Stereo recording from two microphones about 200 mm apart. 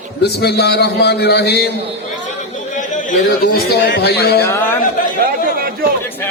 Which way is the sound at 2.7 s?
40° left (ahead or behind).